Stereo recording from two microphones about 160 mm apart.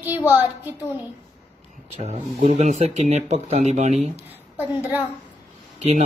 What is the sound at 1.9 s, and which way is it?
Speech, 45° right (ahead or behind).